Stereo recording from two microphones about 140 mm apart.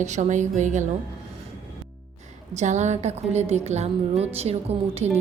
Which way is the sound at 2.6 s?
55° right (ahead or behind).